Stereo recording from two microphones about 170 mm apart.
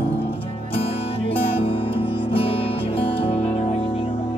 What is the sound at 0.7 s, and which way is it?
Music, 30° left (ahead or behind).